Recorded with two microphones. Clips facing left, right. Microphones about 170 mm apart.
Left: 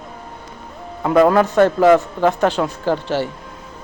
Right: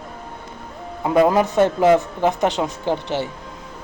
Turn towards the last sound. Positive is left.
turn(degrees=-20)  # may be behind; listen again after turning